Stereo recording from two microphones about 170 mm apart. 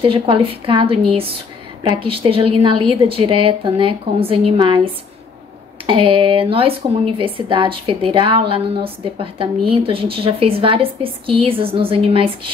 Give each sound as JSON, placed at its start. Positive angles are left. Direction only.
{"t": 0.0, "sound": "a woman's voice", "side_deg": -30}
{"t": 5.9, "sound": "a woman's voice", "side_deg": -30}